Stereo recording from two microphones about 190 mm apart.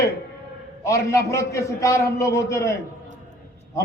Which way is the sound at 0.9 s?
15° left (ahead or behind).